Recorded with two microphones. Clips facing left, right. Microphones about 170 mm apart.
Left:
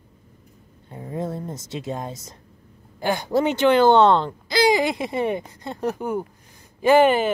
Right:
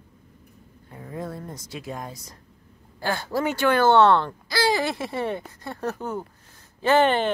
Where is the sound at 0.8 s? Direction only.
25° left (ahead or behind).